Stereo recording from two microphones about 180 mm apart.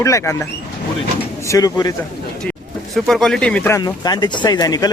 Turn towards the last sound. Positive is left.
turn(degrees=20)  # may be behind; listen again after turning